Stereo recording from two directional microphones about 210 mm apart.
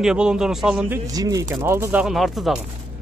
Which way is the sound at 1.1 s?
15° right (ahead or behind).